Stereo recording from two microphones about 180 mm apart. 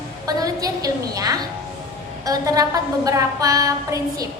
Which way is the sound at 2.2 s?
20° right (ahead or behind).